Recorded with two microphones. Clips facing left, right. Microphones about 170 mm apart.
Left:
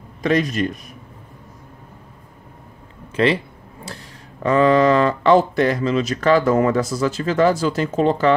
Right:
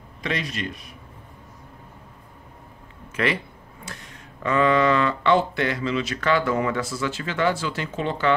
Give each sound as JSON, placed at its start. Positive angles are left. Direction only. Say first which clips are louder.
{"t": 0.2, "sound": "speech", "louder": "left 10 dB", "side_deg": 45}
{"t": 3.2, "sound": "speech", "louder": "left 7 dB", "side_deg": 30}